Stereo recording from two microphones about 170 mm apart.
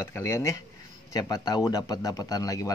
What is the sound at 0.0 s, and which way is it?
Speech, 15° left (ahead or behind).